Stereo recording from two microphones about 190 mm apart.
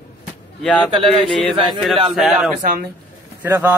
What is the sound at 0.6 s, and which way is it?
Speech, 5° left (ahead or behind).